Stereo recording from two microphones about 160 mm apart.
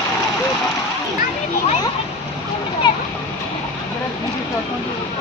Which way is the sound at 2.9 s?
25° left (ahead or behind).